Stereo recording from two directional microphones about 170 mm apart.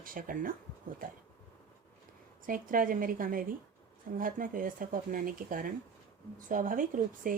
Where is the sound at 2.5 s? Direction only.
55° right (ahead or behind).